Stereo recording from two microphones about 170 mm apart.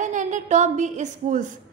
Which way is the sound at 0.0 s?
45° right (ahead or behind).